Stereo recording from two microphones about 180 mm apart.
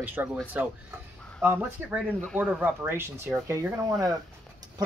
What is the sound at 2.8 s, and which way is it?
Speech, 15° right (ahead or behind).